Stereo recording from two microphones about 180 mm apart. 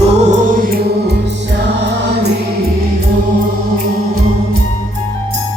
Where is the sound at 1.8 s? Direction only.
70° right (ahead or behind).